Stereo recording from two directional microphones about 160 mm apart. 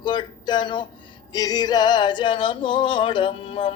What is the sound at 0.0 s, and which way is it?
Speech, 30° left (ahead or behind).